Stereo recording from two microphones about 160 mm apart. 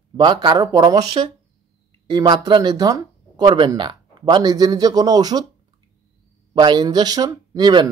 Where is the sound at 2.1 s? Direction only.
25° right (ahead or behind).